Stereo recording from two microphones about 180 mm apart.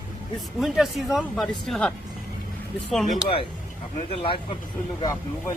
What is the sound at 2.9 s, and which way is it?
Speech, centre (ahead or behind).